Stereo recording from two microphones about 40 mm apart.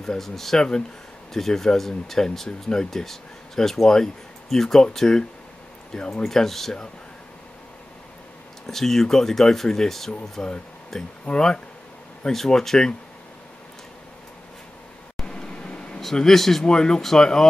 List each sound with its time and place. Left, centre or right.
0.0 s speech: centre
6.2 s speech: centre
8.6 s speech: centre
11.2 s speech: left
15.2 s a sound: left
16.2 s speech: centre
16.6 s speech: centre